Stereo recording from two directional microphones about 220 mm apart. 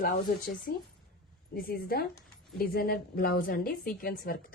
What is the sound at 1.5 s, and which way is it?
A woman's voice, 45° left (ahead or behind).